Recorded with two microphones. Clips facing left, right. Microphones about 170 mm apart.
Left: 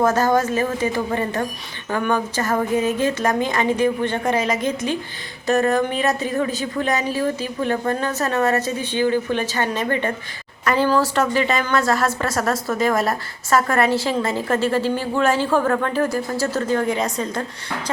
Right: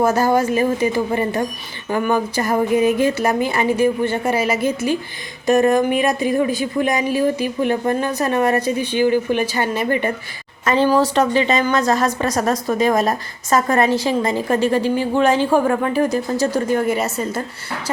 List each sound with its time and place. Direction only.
0.0 s a woman's voice: 10° right (ahead or behind)